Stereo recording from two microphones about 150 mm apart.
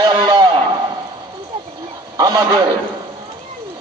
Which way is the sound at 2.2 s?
25° right (ahead or behind).